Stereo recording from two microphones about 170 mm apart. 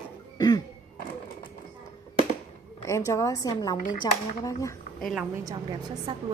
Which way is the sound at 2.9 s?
20° left (ahead or behind).